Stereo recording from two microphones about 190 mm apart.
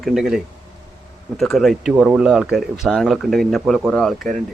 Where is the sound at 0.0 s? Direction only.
Centre (ahead or behind).